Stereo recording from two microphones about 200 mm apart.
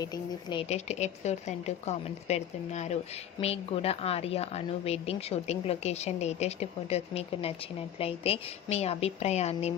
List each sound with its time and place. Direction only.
0.5 s a woman's voice: 35° left (ahead or behind)